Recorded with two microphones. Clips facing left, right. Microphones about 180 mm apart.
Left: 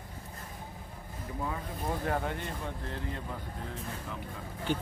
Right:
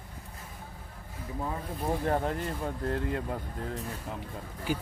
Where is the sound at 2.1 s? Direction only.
35° right (ahead or behind).